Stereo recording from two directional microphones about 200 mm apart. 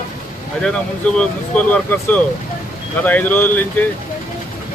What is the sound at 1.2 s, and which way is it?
Speech, 5° left (ahead or behind).